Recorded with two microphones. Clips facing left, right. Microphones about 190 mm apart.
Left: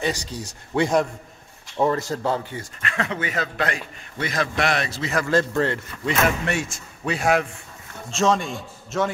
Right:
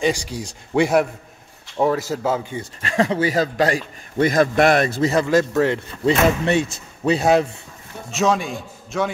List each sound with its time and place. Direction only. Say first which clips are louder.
0.0 s a man's voice: right 5 dB; 10° right (ahead or behind)
2.8 s a man's voice: right 8 dB; 35° right (ahead or behind); by 5.1 s 50° right (ahead or behind)
5.3 s speech: right 4 dB; 10° right (ahead or behind)
6.0 s a man's voice: right 6 dB; 30° right (ahead or behind)
8.2 s a man's voice: right 1 dB; centre (ahead or behind)